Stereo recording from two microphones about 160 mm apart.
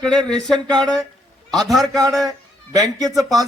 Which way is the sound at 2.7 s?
25° right (ahead or behind).